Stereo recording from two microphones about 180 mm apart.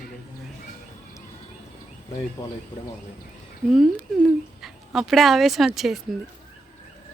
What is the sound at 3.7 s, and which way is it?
Speech, centre (ahead or behind).